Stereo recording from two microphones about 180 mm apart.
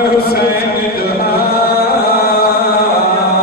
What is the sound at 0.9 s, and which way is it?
Chant, 60° left (ahead or behind).